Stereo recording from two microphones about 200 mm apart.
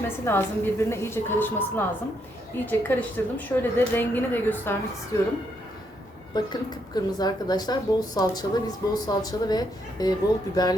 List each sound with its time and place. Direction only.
0.3 s speech: 10° left (ahead or behind)
6.3 s speech: 20° left (ahead or behind)